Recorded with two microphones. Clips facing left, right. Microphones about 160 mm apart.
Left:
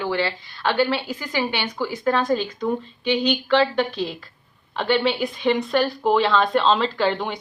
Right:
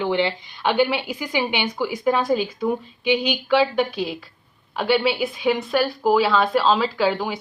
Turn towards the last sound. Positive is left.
turn(degrees=-5)  # may be behind; listen again after turning